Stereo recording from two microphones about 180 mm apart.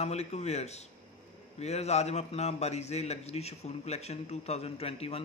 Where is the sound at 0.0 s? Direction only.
35° left (ahead or behind).